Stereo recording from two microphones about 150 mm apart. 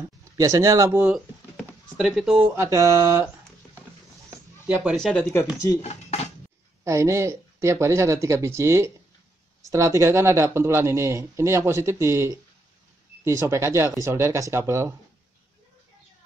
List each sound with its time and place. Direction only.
0.4 s speech: 20° right (ahead or behind)
2.0 s speech: centre (ahead or behind)
2.4 s speech: 20° right (ahead or behind)
4.3 s a sound: 10° right (ahead or behind)
4.9 s speech: 5° left (ahead or behind)
5.8 s speech: 45° left (ahead or behind)
6.8 s speech: 20° right (ahead or behind)